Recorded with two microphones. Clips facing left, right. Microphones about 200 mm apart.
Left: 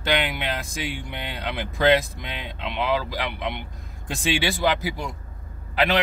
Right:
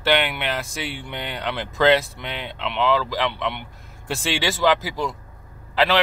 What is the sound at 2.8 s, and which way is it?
Speech, 90° right.